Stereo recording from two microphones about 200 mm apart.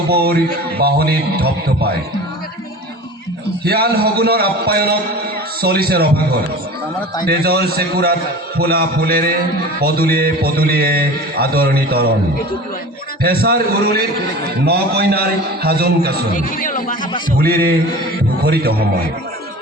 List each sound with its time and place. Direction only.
0.1 s a man's voice: 50° right (ahead or behind)
3.6 s a man's voice: 50° right (ahead or behind)
13.2 s a man's voice: 50° right (ahead or behind)
16.3 s a man's voice: 45° left (ahead or behind)
17.4 s a man's voice: 50° right (ahead or behind)